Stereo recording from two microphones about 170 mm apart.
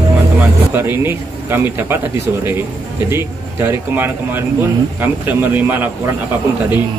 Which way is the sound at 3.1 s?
15° right (ahead or behind).